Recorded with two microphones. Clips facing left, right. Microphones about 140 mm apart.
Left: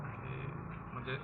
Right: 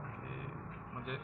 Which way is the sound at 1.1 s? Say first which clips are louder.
Left 1 dB; 15° right (ahead or behind).